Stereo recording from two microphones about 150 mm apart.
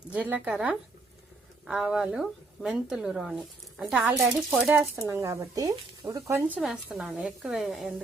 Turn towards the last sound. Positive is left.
turn(degrees=0)  # may be behind; listen again after turning